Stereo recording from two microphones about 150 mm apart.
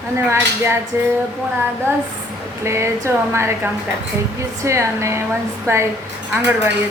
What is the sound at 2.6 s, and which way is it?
Speech, 20° right (ahead or behind).